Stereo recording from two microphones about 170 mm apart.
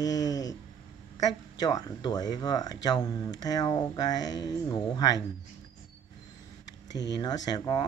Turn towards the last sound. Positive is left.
turn(degrees=25)  # may be behind; listen again after turning